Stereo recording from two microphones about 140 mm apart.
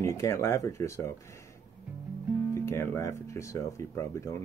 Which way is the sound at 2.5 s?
20° left (ahead or behind).